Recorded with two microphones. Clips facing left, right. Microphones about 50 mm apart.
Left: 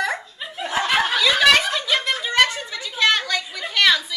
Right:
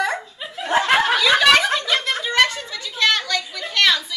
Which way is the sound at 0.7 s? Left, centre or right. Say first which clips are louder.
Right 5 dB; right.